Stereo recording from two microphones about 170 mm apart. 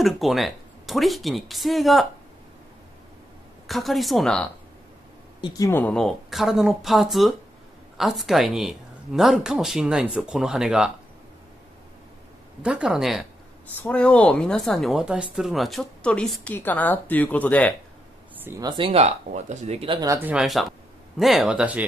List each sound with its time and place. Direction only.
0.0 s speech: centre (ahead or behind)
3.6 s speech: centre (ahead or behind)
5.4 s speech: 20° left (ahead or behind); by 10.9 s 5° right (ahead or behind)
12.6 s speech: 5° right (ahead or behind)
18.3 s a sound: 10° right (ahead or behind)
18.6 s speech: 25° right (ahead or behind)
20.2 s speech: 5° right (ahead or behind)